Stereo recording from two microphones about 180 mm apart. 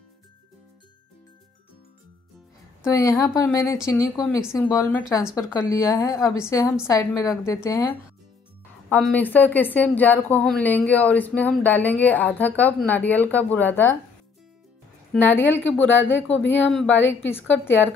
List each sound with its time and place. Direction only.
2.9 s speech: 20° left (ahead or behind)
8.8 s speech: 5° left (ahead or behind)
15.1 s speech: 10° left (ahead or behind)